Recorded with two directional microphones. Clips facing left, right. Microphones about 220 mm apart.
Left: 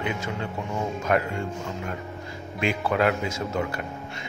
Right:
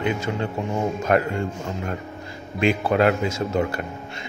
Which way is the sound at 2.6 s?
30° right (ahead or behind).